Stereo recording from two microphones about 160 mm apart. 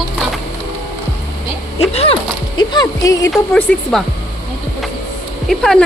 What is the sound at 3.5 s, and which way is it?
Speech, 5° left (ahead or behind).